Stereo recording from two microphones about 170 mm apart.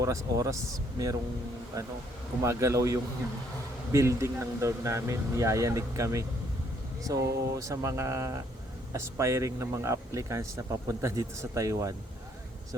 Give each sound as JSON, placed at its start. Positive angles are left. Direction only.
{"t": 0.0, "sound": "speech", "side_deg": -20}